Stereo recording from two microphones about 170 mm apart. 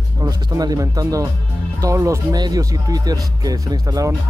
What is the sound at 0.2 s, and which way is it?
Speech, 20° right (ahead or behind).